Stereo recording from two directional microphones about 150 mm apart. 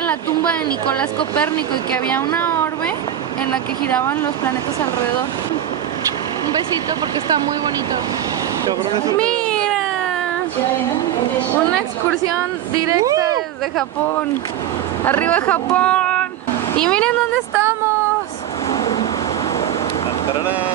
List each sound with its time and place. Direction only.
0.0 s speech: 10° left (ahead or behind)
9.2 s baby cry: 5° left (ahead or behind)
12.7 s speech: 25° right (ahead or behind)
15.0 s speech: 10° left (ahead or behind)
18.7 s vehicle: 30° left (ahead or behind)